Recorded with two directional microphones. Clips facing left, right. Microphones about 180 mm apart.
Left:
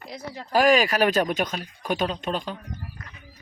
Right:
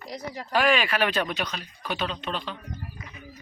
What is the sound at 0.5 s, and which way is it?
Speech, 40° left (ahead or behind).